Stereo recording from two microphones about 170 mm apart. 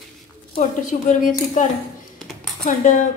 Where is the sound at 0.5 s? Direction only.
45° left (ahead or behind).